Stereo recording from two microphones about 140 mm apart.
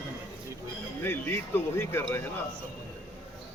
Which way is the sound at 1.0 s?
15° left (ahead or behind).